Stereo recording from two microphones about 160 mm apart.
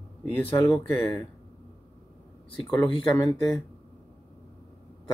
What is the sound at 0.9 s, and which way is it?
Speech, 15° left (ahead or behind).